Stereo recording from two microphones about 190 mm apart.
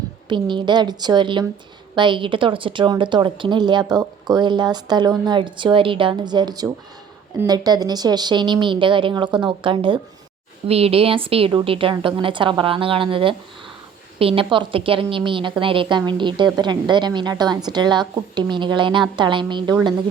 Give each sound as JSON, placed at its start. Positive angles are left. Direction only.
{"t": 0.3, "sound": "a woman's voice", "side_deg": -25}